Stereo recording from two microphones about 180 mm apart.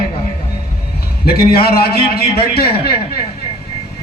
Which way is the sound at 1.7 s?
60° left (ahead or behind).